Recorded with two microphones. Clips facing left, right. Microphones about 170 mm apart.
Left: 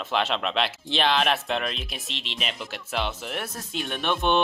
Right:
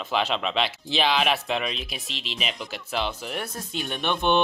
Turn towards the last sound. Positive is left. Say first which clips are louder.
# right 1 dB
turn(degrees=0)  # may be behind; listen again after turning